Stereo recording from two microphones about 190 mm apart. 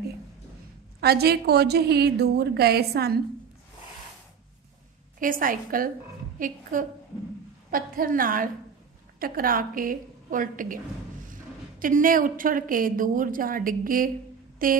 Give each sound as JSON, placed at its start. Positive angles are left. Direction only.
{"t": 1.0, "sound": "a woman's voice", "side_deg": -55}
{"t": 5.2, "sound": "a woman's voice", "side_deg": -45}
{"t": 11.8, "sound": "a woman's voice", "side_deg": -45}